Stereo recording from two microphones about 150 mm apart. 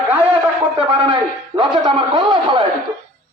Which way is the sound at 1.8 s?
35° right (ahead or behind).